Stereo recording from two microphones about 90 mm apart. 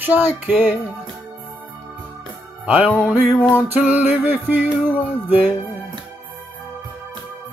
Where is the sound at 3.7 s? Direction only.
20° right (ahead or behind).